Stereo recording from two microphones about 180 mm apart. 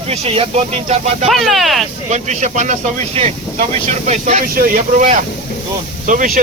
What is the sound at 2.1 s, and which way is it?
Speech, 40° right (ahead or behind).